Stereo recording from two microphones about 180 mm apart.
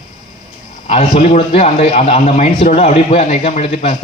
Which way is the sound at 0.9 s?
40° left (ahead or behind).